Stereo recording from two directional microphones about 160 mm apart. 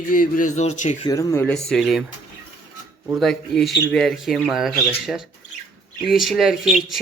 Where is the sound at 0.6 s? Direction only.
45° left (ahead or behind).